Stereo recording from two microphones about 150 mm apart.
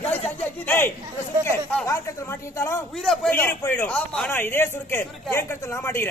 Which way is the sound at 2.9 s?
Centre (ahead or behind).